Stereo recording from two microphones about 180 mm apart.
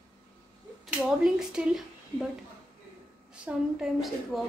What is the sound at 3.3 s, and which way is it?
A woman's voice, 5° right (ahead or behind).